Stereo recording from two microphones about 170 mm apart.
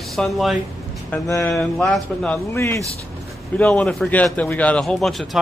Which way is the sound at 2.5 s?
15° left (ahead or behind).